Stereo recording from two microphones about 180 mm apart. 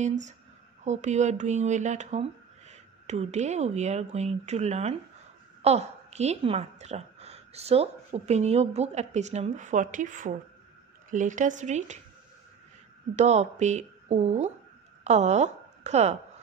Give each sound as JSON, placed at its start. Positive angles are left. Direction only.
{"t": 0.0, "sound": "a woman's voice", "side_deg": -40}
{"t": 13.1, "sound": "a woman's voice", "side_deg": -40}